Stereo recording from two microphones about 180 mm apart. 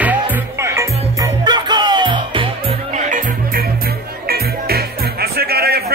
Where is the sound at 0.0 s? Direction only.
10° right (ahead or behind); by 2.5 s 25° right (ahead or behind).